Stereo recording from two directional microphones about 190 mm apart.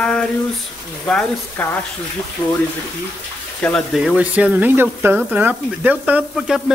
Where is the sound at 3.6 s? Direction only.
Centre (ahead or behind).